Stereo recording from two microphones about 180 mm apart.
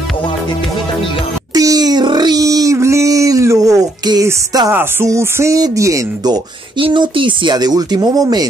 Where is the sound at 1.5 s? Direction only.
20° right (ahead or behind).